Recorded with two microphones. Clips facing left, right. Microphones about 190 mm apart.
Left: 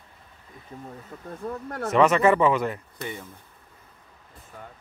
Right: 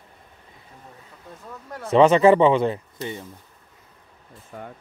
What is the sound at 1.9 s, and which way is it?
Speech, 30° right (ahead or behind).